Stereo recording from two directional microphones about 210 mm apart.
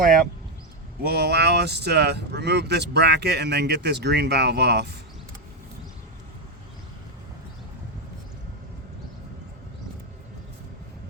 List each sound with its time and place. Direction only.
0.0 s speech: 40° right (ahead or behind)